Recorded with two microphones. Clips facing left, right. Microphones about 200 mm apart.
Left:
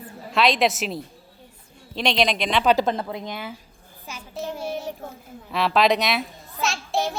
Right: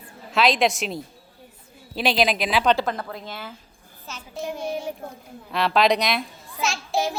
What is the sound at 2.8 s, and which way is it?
A woman's voice, 20° left (ahead or behind).